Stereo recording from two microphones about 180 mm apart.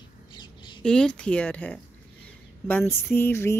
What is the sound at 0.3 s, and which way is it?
Bird, 25° left (ahead or behind).